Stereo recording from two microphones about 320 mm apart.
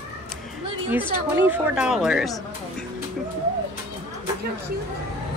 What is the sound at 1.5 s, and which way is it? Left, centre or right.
Speech, centre.